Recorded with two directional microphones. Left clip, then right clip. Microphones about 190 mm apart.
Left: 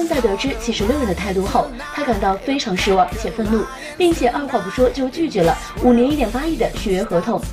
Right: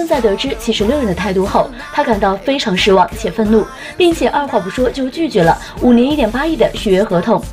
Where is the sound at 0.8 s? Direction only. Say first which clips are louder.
Right 3 dB; centre (ahead or behind).